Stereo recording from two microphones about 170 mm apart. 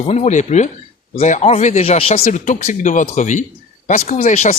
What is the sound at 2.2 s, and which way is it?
Speech, 45° left (ahead or behind).